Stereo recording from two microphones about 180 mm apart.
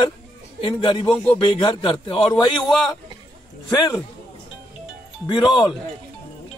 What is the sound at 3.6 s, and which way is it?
Speech, 25° left (ahead or behind).